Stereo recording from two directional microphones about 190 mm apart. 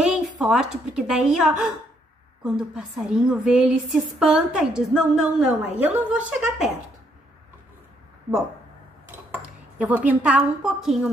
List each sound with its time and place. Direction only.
0.0 s a woman's voice: 5° right (ahead or behind)
9.8 s a woman's voice: 10° right (ahead or behind)